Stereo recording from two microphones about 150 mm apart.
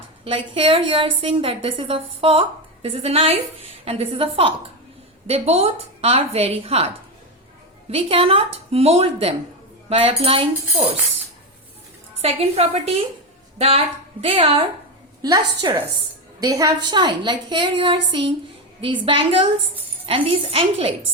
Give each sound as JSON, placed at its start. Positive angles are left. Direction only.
{"t": 0.3, "sound": "a woman's voice", "side_deg": -35}
{"t": 12.2, "sound": "a woman's voice", "side_deg": -45}